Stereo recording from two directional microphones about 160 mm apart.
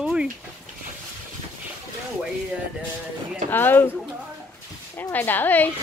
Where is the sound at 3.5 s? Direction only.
10° left (ahead or behind).